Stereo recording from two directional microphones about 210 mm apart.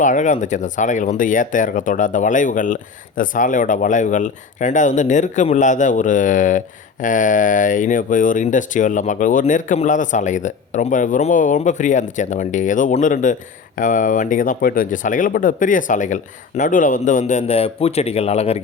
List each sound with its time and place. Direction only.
0.0 s speech: 35° left (ahead or behind)